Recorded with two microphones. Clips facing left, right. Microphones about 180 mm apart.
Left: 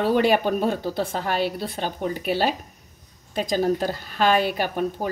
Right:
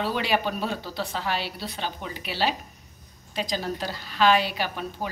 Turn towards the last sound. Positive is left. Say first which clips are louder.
# left 6 dB
turn(degrees=50)  # may be behind; listen again after turning